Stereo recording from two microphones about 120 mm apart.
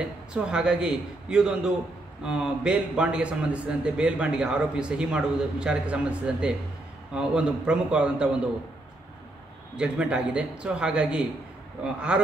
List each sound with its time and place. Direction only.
0.0 s a man's voice: 5° right (ahead or behind)
9.8 s a man's voice: 10° right (ahead or behind)